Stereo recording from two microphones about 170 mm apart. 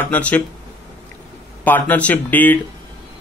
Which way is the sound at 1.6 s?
10° left (ahead or behind).